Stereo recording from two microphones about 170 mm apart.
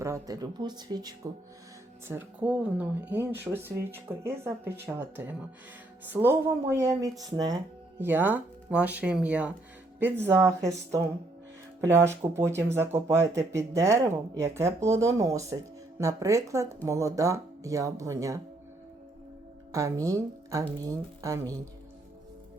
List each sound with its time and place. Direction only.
0.0 s speech: 20° right (ahead or behind)
2.0 s speech: 10° right (ahead or behind)
19.7 s speech: 20° right (ahead or behind)